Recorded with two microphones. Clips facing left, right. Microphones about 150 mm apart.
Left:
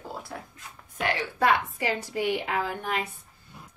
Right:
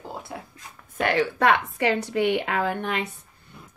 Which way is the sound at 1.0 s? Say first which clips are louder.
Right 4 dB; 70° right (ahead or behind).